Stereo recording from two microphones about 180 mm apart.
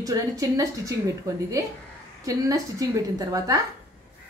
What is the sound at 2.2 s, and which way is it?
Speech, 20° right (ahead or behind).